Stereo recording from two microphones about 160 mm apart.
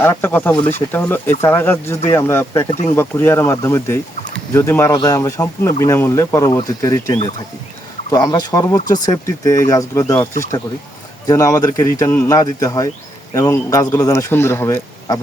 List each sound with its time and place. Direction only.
0.0 s speech: 15° left (ahead or behind)
2.5 s speech: 25° left (ahead or behind)
2.9 s speech: 15° left (ahead or behind)
8.1 s speech: 25° left (ahead or behind)